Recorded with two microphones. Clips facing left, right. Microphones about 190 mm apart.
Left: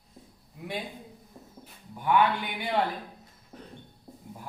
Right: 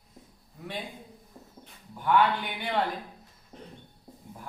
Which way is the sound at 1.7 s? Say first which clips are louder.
Even; 10° left (ahead or behind).